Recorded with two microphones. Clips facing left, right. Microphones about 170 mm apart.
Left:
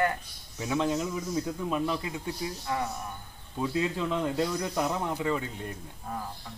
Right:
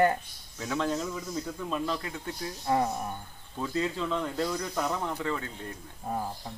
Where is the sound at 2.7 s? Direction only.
30° right (ahead or behind).